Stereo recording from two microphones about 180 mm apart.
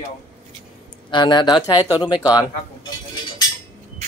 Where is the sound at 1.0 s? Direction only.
25° left (ahead or behind).